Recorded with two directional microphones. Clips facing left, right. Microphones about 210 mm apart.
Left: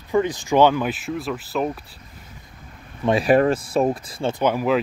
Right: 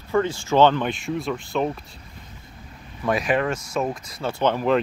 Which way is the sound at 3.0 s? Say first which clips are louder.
Left 5 dB; 30° left (ahead or behind).